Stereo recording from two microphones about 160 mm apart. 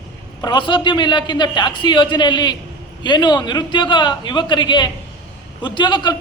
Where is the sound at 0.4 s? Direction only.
30° left (ahead or behind).